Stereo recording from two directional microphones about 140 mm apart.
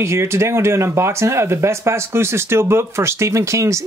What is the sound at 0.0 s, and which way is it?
Speech, 20° right (ahead or behind).